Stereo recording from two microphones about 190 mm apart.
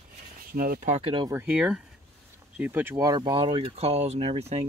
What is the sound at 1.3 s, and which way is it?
Speech, 10° right (ahead or behind).